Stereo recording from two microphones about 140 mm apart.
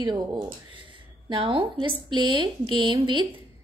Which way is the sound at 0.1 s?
35° right (ahead or behind).